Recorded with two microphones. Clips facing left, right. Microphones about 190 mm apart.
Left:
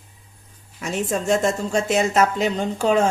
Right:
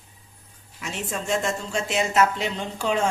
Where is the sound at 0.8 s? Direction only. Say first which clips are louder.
Left 7 dB; 40° left (ahead or behind).